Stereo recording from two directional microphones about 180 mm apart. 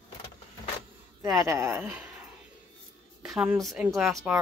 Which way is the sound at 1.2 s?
15° right (ahead or behind).